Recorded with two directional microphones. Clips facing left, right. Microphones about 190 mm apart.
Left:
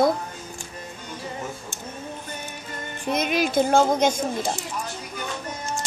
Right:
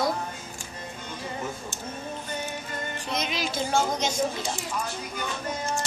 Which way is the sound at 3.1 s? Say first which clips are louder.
Left 8 dB; 55° left (ahead or behind).